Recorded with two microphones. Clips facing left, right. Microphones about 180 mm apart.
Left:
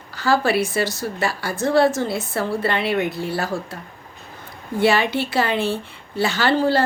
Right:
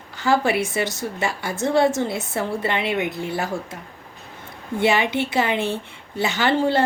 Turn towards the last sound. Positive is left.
turn(degrees=-20)  # may be behind; listen again after turning